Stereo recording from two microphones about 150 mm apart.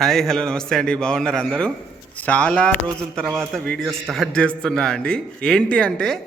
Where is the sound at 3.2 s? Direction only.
20° right (ahead or behind).